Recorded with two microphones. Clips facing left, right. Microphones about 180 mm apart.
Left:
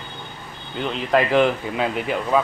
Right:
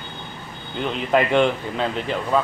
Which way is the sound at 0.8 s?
Centre (ahead or behind).